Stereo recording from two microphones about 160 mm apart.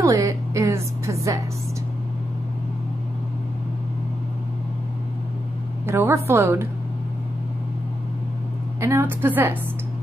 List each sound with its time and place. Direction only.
0.0 s music: 20° right (ahead or behind)
5.9 s a woman's voice: 15° right (ahead or behind)
8.8 s a woman's voice: 15° right (ahead or behind)